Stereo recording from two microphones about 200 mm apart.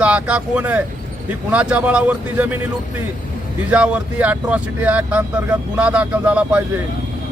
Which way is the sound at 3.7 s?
5° right (ahead or behind).